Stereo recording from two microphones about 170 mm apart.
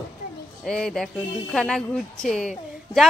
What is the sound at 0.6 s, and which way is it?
Speech, 5° left (ahead or behind).